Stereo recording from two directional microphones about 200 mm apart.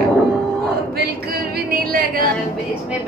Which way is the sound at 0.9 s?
50° right (ahead or behind).